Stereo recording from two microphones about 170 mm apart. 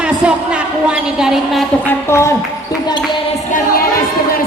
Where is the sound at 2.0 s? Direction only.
15° left (ahead or behind).